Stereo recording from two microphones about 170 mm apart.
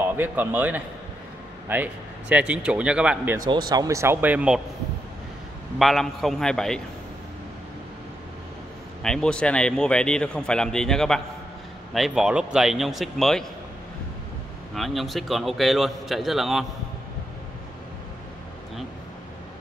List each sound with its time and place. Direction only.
0.0 s a man's voice: 10° right (ahead or behind)
3.4 s a man's voice: 25° right (ahead or behind); by 4.6 s 10° right (ahead or behind)
5.8 s speech: centre (ahead or behind)
9.0 s speech: 5° left (ahead or behind)
14.8 s speech: centre (ahead or behind)